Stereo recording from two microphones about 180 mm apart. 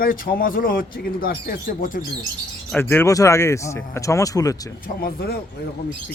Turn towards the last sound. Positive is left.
turn(degrees=55)  # may be behind; listen again after turning